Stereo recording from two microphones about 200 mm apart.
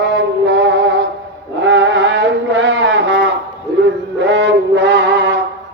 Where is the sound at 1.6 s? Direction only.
65° right (ahead or behind).